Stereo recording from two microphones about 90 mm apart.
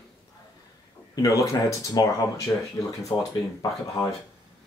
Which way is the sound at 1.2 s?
40° left (ahead or behind).